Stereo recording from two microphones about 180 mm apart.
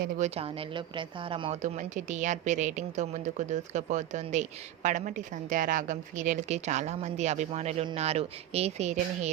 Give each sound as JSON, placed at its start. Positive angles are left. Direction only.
{"t": 0.0, "sound": "speech", "side_deg": -40}